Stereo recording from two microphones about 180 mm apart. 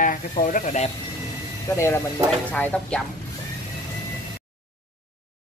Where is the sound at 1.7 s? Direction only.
15° left (ahead or behind).